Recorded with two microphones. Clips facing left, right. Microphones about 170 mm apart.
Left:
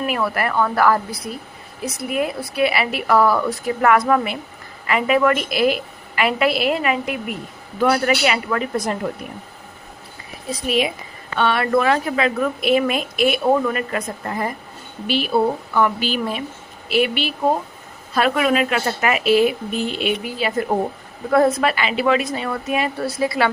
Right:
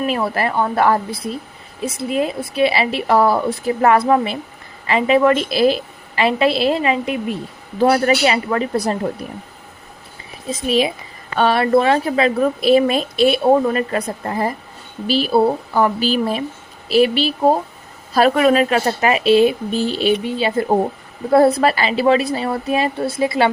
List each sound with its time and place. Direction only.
0.1 s a woman's voice: 25° right (ahead or behind)
10.5 s a woman's voice: 30° right (ahead or behind)